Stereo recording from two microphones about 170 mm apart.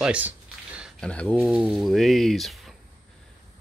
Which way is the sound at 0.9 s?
5° left (ahead or behind).